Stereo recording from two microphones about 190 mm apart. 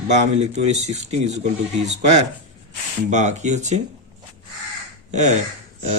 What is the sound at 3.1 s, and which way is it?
Speech, 40° right (ahead or behind).